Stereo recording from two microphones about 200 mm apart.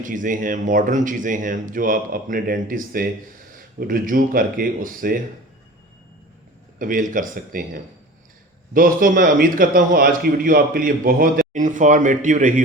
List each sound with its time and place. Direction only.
0.0 s a man's voice: 40° right (ahead or behind)
6.7 s a man's voice: 40° right (ahead or behind)